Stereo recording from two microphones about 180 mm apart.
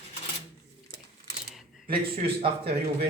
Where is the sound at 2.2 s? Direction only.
30° right (ahead or behind).